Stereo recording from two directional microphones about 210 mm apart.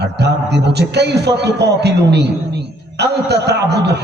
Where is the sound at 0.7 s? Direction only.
50° right (ahead or behind).